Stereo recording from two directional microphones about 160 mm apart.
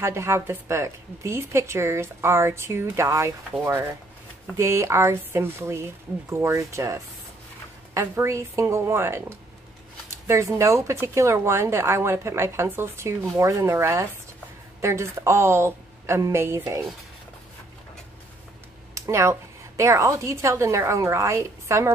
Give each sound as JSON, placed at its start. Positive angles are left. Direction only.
{"t": 0.0, "sound": "speech", "side_deg": -15}
{"t": 18.9, "sound": "speech", "side_deg": -20}